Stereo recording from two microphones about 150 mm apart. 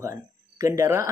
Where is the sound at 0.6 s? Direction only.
20° right (ahead or behind).